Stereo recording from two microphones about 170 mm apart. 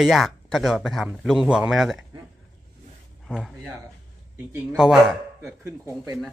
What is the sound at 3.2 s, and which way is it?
A man's voice, centre (ahead or behind).